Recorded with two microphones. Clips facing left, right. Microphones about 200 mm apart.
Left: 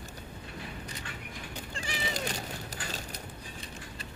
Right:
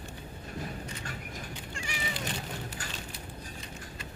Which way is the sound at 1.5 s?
35° left (ahead or behind).